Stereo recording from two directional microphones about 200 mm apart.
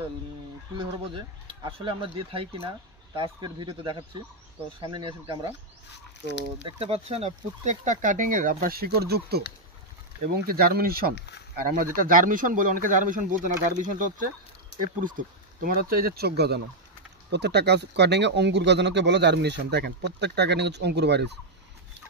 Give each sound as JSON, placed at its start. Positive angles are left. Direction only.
{"t": 0.7, "sound": "speech", "side_deg": -25}
{"t": 6.8, "sound": "speech", "side_deg": -30}
{"t": 11.1, "sound": "speech", "side_deg": 55}
{"t": 11.6, "sound": "speech", "side_deg": -45}
{"t": 15.0, "sound": "speech", "side_deg": -40}